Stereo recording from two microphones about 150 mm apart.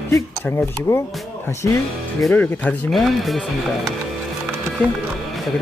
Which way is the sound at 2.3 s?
10° left (ahead or behind).